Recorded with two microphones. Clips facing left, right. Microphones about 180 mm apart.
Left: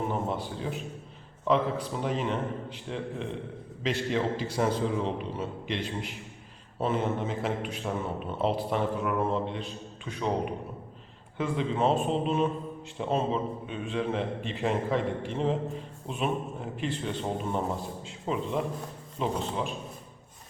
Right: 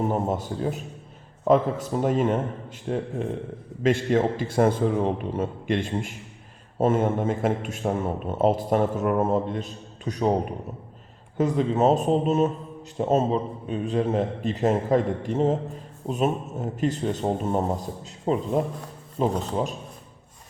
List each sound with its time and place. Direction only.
0.1 s a man's voice: 45° right (ahead or behind)